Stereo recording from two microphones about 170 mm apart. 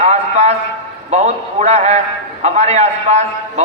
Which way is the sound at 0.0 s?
40° right (ahead or behind).